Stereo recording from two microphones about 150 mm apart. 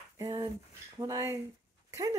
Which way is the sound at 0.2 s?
25° right (ahead or behind).